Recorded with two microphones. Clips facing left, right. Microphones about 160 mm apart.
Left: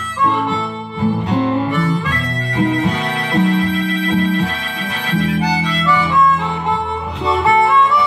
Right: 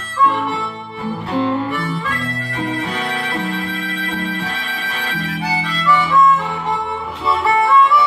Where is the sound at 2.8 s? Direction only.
15° left (ahead or behind).